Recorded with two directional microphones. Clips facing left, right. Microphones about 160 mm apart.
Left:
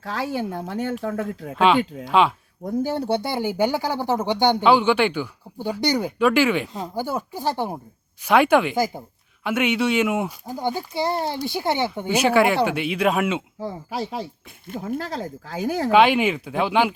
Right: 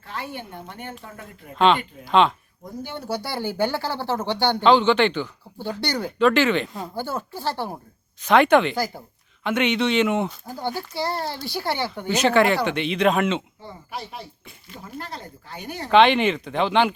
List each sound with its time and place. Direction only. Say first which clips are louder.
0.0 s speech: left 8 dB; 90° left
1.5 s speech: left 1 dB; 5° left (ahead or behind)
2.8 s speech: left 6 dB; 35° left (ahead or behind)
3.2 s speech: left 3 dB; 15° left (ahead or behind)
8.7 s speech: left 4 dB; 20° left (ahead or behind)
9.4 s speech: even; 10° left (ahead or behind)
13.6 s speech: left 7 dB; 90° left
15.9 s speech: right 1 dB; 5° left (ahead or behind)